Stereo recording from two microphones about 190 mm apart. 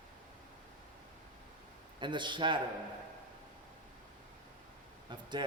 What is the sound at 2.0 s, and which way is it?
Speech, 25° right (ahead or behind).